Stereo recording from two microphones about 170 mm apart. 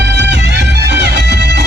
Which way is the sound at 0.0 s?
90° right.